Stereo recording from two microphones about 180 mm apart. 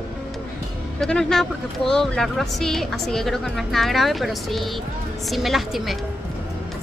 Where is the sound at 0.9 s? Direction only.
5° left (ahead or behind).